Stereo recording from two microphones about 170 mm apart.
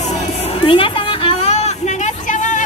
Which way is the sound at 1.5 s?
45° left (ahead or behind).